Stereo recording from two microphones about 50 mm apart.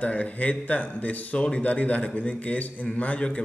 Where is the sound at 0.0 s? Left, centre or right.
Left.